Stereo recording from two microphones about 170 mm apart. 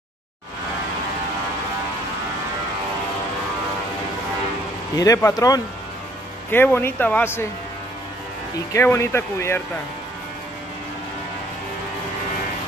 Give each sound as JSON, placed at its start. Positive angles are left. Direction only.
{"t": 4.9, "sound": "speech", "side_deg": 20}
{"t": 8.7, "sound": "speech", "side_deg": 15}